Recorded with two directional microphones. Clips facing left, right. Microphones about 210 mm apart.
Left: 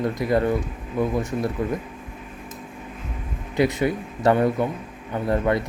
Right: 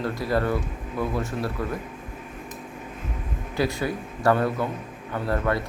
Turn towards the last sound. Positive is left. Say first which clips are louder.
# left 3 dB
turn(degrees=20)  # may be behind; listen again after turning